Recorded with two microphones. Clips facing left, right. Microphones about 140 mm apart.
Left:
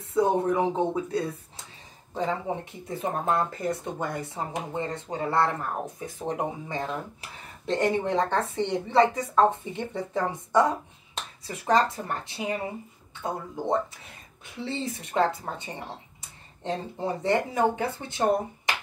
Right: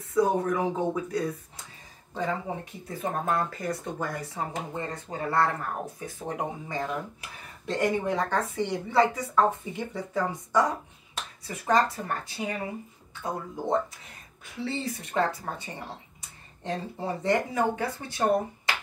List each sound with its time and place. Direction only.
0.0 s speech: 25° left (ahead or behind)
14.6 s speech: 20° left (ahead or behind)